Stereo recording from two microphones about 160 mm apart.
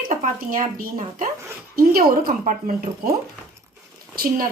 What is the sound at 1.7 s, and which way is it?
Speech, 70° right (ahead or behind).